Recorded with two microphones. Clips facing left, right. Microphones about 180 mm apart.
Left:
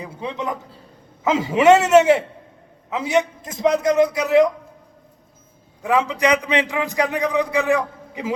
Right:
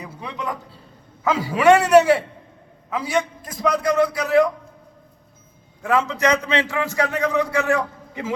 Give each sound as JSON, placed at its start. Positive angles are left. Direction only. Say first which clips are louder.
{"t": 0.0, "sound": "a sound", "louder": "left 3 dB", "side_deg": 25}
{"t": 1.2, "sound": "a man's voice", "louder": "left 2 dB", "side_deg": 20}
{"t": 5.8, "sound": "a man's voice", "louder": "left 1 dB", "side_deg": 15}